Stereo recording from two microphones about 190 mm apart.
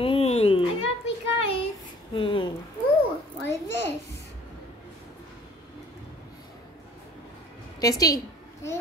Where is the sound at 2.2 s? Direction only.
25° left (ahead or behind).